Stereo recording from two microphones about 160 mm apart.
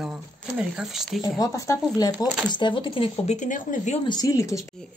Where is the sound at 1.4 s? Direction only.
20° left (ahead or behind).